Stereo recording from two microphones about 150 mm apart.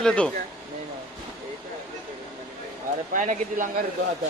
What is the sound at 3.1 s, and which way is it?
Speech, 60° right (ahead or behind).